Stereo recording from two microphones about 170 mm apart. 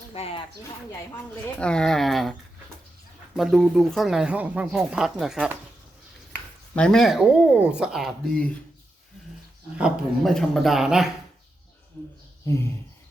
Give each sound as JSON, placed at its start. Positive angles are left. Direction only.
{"t": 0.1, "sound": "speech", "side_deg": 35}
{"t": 1.5, "sound": "speech", "side_deg": 5}
{"t": 3.3, "sound": "speech", "side_deg": 0}
{"t": 6.7, "sound": "speech", "side_deg": 5}
{"t": 9.7, "sound": "speech", "side_deg": 0}